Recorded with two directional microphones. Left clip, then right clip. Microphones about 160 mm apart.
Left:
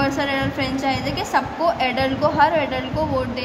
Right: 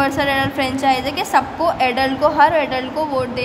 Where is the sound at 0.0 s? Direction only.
30° right (ahead or behind).